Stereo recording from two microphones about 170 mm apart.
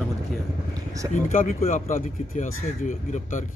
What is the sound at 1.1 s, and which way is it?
Speech, 50° left (ahead or behind).